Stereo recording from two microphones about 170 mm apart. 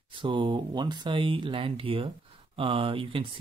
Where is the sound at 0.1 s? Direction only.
30° right (ahead or behind).